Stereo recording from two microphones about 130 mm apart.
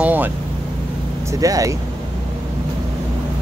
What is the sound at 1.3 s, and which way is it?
Speech, 25° right (ahead or behind).